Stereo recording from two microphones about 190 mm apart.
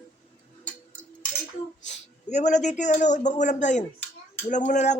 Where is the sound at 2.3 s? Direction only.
40° left (ahead or behind).